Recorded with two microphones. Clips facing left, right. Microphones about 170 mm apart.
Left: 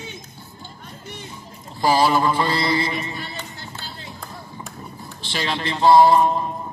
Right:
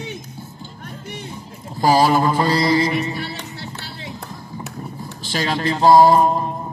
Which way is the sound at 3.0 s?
70° right (ahead or behind).